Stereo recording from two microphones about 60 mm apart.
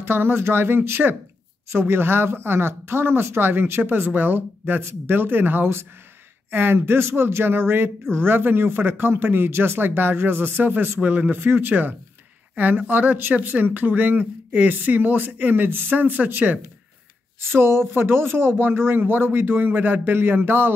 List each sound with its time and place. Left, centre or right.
0.0 s speech: right